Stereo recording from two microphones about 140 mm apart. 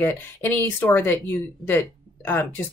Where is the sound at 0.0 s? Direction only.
15° left (ahead or behind).